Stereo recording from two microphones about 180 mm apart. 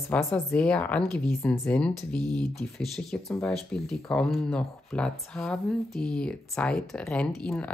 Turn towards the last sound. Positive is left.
turn(degrees=5)  # may be behind; listen again after turning